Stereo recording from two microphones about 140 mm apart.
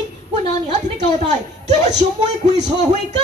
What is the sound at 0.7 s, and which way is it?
Speech, 55° right (ahead or behind).